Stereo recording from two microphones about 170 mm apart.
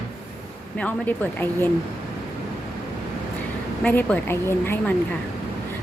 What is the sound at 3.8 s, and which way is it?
A woman's voice, 10° left (ahead or behind).